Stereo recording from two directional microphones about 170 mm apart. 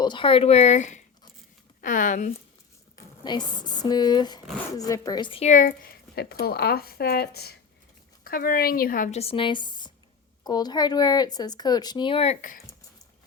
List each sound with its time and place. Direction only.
0.0 s speech: 30° left (ahead or behind); by 2.3 s 50° left (ahead or behind)
3.2 s speech: 25° left (ahead or behind)
5.5 s speech: 55° left (ahead or behind); by 7.5 s 70° left (ahead or behind)
8.2 s speech: 60° left (ahead or behind)
9.0 s speech: 35° left (ahead or behind)